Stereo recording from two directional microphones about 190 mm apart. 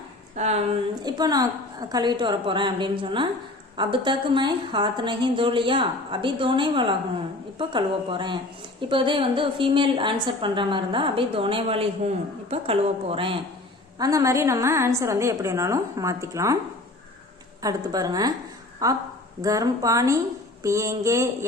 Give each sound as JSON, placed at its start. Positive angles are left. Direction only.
{"t": 0.3, "sound": "a woman's voice", "side_deg": -35}
{"t": 1.0, "sound": "a woman's voice", "side_deg": -20}
{"t": 14.0, "sound": "a woman's voice", "side_deg": -15}
{"t": 17.6, "sound": "a woman's voice", "side_deg": -20}